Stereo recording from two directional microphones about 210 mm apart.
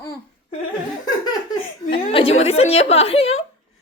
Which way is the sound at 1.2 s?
20° left (ahead or behind).